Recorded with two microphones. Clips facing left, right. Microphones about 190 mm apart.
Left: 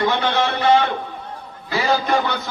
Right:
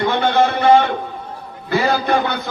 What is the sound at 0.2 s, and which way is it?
A man's voice, 55° right (ahead or behind).